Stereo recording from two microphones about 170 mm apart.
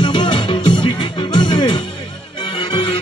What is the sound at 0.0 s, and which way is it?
Music, 25° left (ahead or behind).